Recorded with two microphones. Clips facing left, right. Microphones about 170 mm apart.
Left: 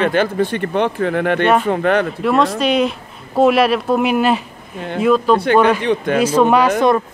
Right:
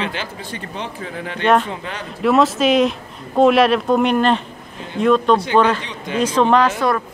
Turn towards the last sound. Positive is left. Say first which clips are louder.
# left 2 dB
turn(degrees=10)  # may be behind; listen again after turning